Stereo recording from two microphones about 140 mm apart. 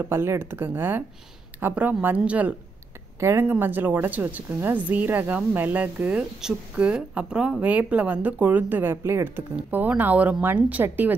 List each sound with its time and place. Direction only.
0.0 s a woman's voice: 15° right (ahead or behind)